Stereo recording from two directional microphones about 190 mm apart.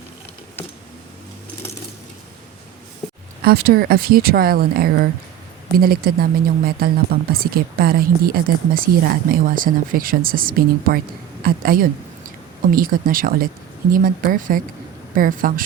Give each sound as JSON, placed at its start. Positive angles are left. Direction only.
{"t": 3.4, "sound": "speech", "side_deg": -55}